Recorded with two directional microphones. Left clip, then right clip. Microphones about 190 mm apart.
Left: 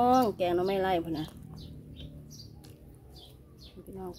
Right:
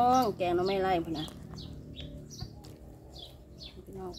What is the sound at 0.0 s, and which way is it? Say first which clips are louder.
Speech: left 1 dB; 45° left (ahead or behind).